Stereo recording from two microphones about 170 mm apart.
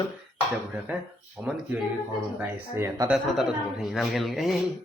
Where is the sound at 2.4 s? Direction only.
20° right (ahead or behind).